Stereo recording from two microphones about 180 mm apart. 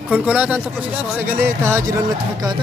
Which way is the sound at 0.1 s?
5° right (ahead or behind).